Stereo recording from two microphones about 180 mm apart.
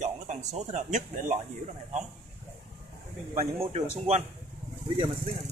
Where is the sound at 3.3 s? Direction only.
35° right (ahead or behind).